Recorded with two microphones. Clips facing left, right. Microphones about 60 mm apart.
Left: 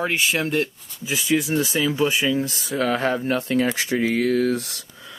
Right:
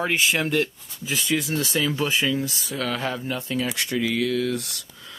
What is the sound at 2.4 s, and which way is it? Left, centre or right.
Speech, left.